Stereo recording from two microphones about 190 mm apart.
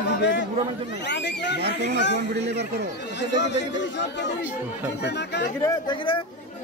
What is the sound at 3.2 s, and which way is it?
Speech, 65° left (ahead or behind).